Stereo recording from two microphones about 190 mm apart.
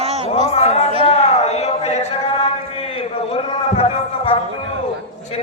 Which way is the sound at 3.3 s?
30° left (ahead or behind).